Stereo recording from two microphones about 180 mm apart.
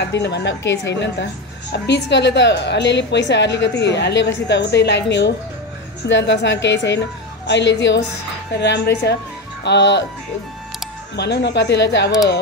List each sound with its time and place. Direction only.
0.0 s a woman's voice: 75° left (ahead or behind)
8.5 s speech: 70° left (ahead or behind)
11.1 s speech: 70° left (ahead or behind)